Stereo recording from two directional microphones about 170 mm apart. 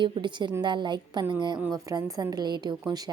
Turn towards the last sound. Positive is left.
turn(degrees=-25)  # may be behind; listen again after turning